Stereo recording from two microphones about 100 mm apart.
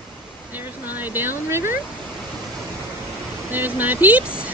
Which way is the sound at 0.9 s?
20° right (ahead or behind).